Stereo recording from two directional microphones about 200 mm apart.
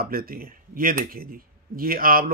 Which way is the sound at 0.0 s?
45° right (ahead or behind).